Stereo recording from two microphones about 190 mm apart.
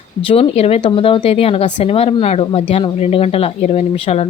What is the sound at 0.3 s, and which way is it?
Speech, 30° left (ahead or behind).